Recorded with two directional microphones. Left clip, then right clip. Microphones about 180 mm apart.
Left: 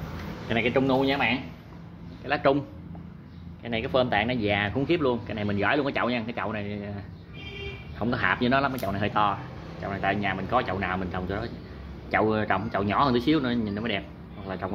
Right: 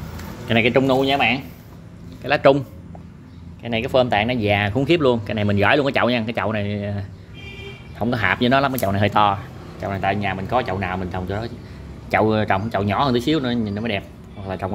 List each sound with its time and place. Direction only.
0.5 s speech: 55° right (ahead or behind)
2.2 s speech: 40° right (ahead or behind)
3.6 s speech: 25° right (ahead or behind)
8.0 s speech: 30° right (ahead or behind)
9.8 s speech: 25° right (ahead or behind)